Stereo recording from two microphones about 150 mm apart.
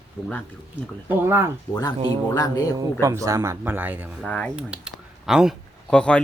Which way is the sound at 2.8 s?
20° right (ahead or behind).